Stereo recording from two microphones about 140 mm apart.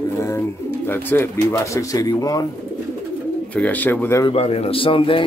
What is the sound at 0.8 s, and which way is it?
Speech, 15° left (ahead or behind).